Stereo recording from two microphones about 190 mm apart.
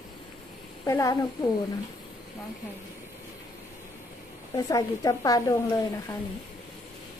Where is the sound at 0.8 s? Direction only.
15° left (ahead or behind).